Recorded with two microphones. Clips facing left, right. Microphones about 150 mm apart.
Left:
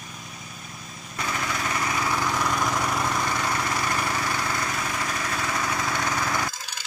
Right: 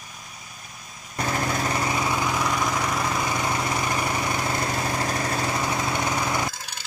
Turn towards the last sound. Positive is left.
turn(degrees=-20)  # may be behind; listen again after turning